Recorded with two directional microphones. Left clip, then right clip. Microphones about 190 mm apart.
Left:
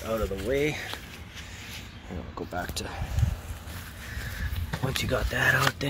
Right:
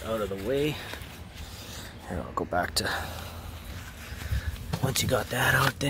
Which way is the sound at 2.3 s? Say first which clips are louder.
Right 6 dB; 25° right (ahead or behind).